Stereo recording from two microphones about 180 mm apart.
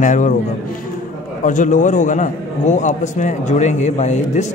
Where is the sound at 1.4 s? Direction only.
45° left (ahead or behind).